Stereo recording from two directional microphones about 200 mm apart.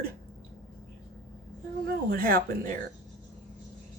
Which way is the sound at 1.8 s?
50° right (ahead or behind).